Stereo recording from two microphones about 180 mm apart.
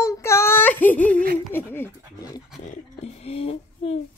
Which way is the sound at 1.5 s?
10° left (ahead or behind).